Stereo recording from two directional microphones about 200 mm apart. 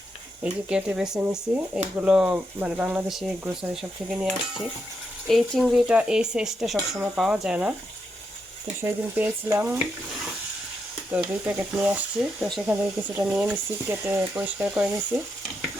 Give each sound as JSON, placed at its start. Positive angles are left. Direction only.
{"t": 0.4, "sound": "speech", "side_deg": -5}
{"t": 6.7, "sound": "speech", "side_deg": -15}
{"t": 7.2, "sound": "speech", "side_deg": 0}
{"t": 8.8, "sound": "speech", "side_deg": -10}
{"t": 11.1, "sound": "speech", "side_deg": -5}